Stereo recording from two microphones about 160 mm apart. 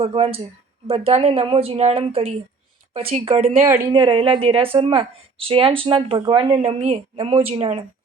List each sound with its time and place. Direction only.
0.0 s a woman's voice: 35° right (ahead or behind)
3.9 s a woman's voice: 30° right (ahead or behind)